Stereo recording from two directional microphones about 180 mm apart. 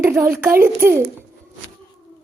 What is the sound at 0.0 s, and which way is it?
A child's voice, 15° right (ahead or behind).